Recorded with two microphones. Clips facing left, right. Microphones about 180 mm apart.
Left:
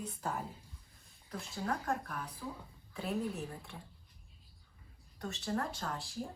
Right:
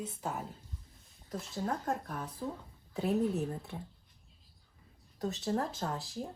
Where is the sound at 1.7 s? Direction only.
25° right (ahead or behind).